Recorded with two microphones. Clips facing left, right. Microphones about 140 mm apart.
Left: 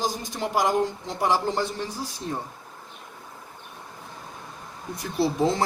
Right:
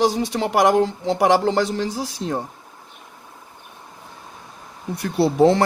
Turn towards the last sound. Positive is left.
turn(degrees=-65)  # may be behind; listen again after turning